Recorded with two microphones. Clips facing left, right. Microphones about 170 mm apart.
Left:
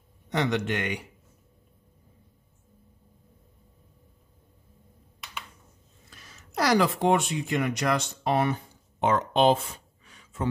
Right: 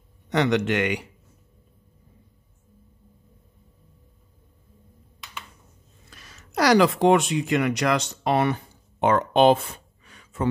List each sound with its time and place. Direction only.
0.3 s a man's voice: 85° right
6.0 s speech: 85° right
9.0 s a sound: 60° right (ahead or behind)